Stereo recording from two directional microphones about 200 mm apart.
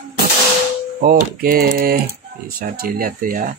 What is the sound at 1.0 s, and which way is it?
Speech, 45° right (ahead or behind).